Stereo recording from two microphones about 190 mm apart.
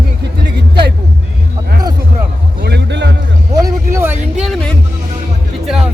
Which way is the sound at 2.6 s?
65° right (ahead or behind).